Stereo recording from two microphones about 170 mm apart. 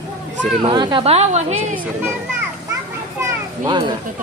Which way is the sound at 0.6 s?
25° right (ahead or behind).